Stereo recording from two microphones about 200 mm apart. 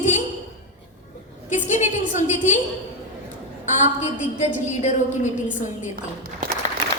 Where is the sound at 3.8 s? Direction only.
40° left (ahead or behind).